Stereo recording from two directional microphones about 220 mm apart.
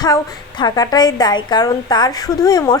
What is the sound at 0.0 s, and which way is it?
A woman's voice, 20° left (ahead or behind).